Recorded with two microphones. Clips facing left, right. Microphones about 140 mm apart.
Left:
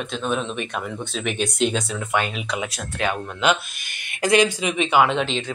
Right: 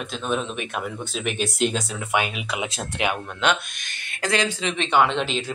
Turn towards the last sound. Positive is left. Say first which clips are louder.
# left 2 dB
turn(degrees=0)  # may be behind; listen again after turning